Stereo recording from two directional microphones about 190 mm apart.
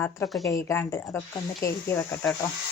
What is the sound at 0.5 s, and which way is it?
Speech, 15° left (ahead or behind).